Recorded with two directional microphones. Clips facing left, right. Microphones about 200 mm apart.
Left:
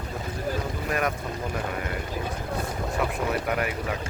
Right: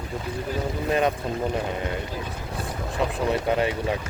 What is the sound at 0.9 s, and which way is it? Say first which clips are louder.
Speech: right 5 dB; 25° right (ahead or behind).